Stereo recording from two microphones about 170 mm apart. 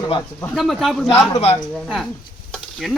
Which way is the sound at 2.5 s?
Centre (ahead or behind).